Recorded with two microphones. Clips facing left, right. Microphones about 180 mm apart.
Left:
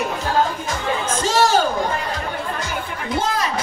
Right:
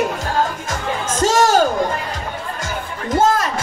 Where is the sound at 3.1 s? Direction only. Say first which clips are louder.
Right 6 dB; 45° right (ahead or behind).